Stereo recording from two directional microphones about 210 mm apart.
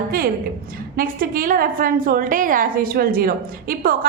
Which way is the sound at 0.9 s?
45° right (ahead or behind).